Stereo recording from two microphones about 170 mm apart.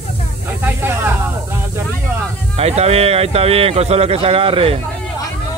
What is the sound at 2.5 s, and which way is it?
Speech, 40° right (ahead or behind).